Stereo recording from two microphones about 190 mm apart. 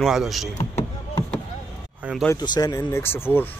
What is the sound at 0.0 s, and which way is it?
Speech, centre (ahead or behind).